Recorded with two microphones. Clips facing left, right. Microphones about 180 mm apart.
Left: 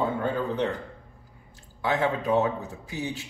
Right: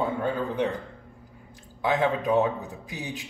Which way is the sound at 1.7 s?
15° right (ahead or behind).